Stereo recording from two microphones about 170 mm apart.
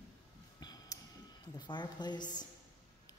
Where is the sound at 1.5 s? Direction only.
25° left (ahead or behind).